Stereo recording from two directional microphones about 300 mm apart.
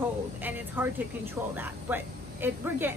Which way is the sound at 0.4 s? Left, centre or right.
Centre.